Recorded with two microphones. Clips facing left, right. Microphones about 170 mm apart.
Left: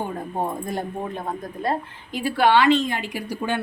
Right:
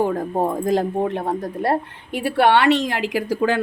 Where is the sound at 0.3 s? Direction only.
90° right.